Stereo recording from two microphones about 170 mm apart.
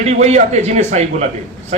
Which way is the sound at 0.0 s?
40° right (ahead or behind).